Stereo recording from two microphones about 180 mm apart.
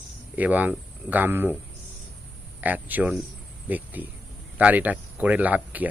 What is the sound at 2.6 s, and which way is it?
Speech, 10° right (ahead or behind).